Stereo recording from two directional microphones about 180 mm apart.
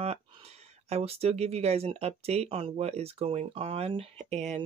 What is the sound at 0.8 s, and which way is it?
Speech, 35° right (ahead or behind).